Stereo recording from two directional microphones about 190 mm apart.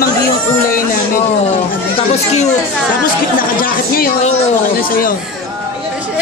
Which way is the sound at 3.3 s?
50° left (ahead or behind).